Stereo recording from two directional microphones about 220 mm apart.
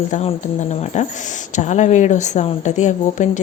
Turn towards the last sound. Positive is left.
turn(degrees=35)  # may be behind; listen again after turning